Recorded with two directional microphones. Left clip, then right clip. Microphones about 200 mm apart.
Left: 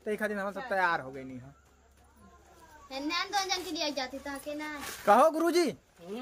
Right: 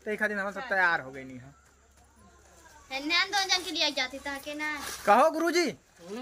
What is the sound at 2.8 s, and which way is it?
A woman's voice, 40° left (ahead or behind).